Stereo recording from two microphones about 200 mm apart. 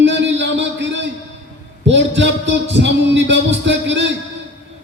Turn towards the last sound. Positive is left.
turn(degrees=-65)  # may be behind; listen again after turning